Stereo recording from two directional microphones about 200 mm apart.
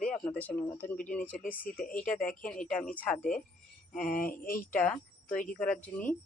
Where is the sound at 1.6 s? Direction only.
45° left (ahead or behind).